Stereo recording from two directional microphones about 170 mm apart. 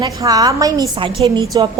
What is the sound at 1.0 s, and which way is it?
Speech, 30° right (ahead or behind).